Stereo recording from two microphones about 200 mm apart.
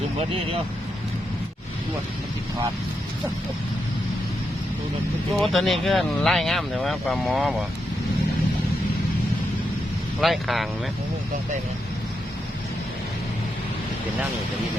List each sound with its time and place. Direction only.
0.2 s speech: 30° right (ahead or behind)
5.4 s speech: centre (ahead or behind)
10.2 s speech: centre (ahead or behind)